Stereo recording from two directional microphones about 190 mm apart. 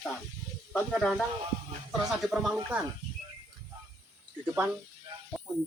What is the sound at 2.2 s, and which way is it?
Speech, 5° right (ahead or behind).